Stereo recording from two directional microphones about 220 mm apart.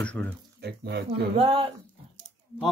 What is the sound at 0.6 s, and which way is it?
Speech, 50° right (ahead or behind).